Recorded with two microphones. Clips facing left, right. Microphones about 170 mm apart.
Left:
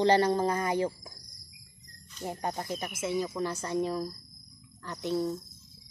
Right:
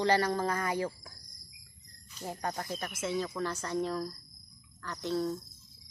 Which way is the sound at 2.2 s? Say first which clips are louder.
Left 2 dB; 20° left (ahead or behind).